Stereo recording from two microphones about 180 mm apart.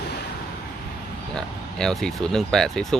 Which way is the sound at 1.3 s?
5° left (ahead or behind).